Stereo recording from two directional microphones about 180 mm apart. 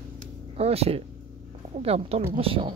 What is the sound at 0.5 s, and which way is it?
Speech, 35° right (ahead or behind).